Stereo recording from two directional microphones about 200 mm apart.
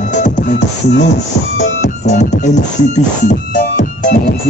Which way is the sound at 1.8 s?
35° left (ahead or behind).